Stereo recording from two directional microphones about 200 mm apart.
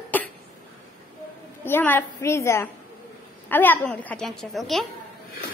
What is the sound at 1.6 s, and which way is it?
A woman's voice, 10° left (ahead or behind).